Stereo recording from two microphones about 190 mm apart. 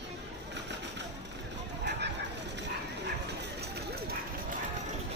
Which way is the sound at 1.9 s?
65° right (ahead or behind).